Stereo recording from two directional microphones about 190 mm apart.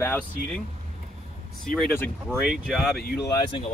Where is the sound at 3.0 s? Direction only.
55° left (ahead or behind).